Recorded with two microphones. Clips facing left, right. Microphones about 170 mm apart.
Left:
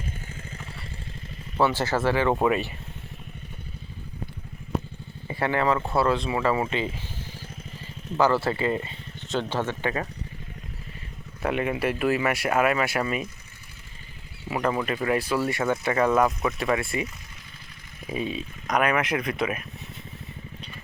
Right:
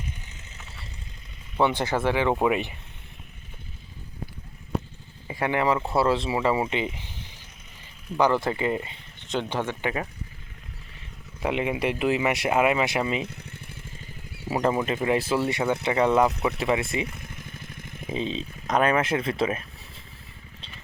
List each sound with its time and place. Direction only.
1.5 s speech: 15° right (ahead or behind)
5.3 s speech: 15° right (ahead or behind)
8.1 s speech: 15° right (ahead or behind)
11.4 s speech: 15° right (ahead or behind)
14.6 s speech: 25° right (ahead or behind)